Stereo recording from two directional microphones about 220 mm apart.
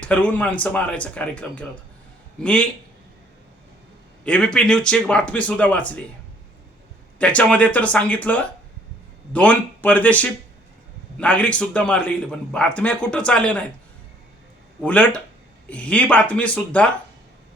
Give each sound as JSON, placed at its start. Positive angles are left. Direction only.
{"t": 0.0, "sound": "a man's voice", "side_deg": 5}
{"t": 4.2, "sound": "a man's voice", "side_deg": 5}
{"t": 7.2, "sound": "a man's voice", "side_deg": 5}
{"t": 14.8, "sound": "a man's voice", "side_deg": 5}